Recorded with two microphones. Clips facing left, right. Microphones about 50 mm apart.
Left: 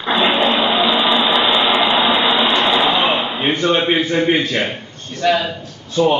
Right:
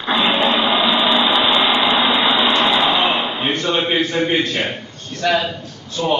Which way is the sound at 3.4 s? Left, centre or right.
Centre.